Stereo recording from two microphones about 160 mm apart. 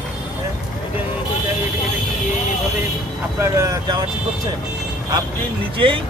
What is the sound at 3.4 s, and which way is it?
Speech, 20° right (ahead or behind).